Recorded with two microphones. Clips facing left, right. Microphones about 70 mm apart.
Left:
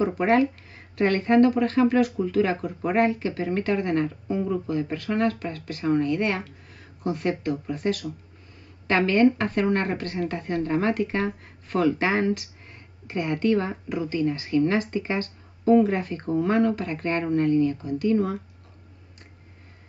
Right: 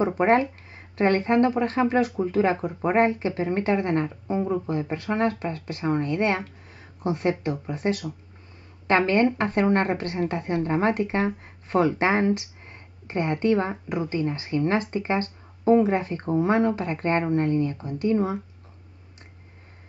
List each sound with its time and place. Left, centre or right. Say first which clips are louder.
0.0 s speech: right 1 dB; right